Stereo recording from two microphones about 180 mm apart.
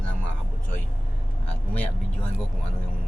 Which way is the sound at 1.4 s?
10° left (ahead or behind).